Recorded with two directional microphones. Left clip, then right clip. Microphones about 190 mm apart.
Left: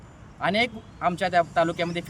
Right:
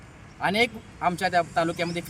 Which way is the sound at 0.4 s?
5° left (ahead or behind).